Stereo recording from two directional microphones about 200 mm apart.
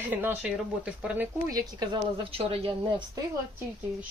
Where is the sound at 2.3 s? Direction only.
30° right (ahead or behind).